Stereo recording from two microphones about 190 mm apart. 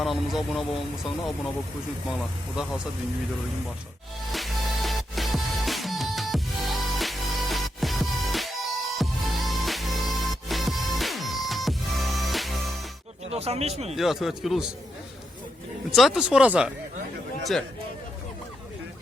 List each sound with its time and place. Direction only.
0.0 s speech: centre (ahead or behind)
2.0 s speech: centre (ahead or behind)
4.3 s music: centre (ahead or behind)
13.3 s speech: 35° right (ahead or behind)
13.9 s speech: centre (ahead or behind)
15.9 s speech: centre (ahead or behind)